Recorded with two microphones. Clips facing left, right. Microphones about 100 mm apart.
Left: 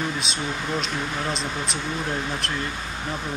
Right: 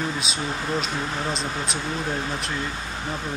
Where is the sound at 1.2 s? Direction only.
Centre (ahead or behind).